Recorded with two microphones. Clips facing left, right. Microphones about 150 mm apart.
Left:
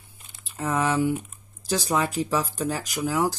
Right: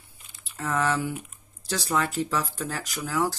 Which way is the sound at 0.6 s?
20° left (ahead or behind).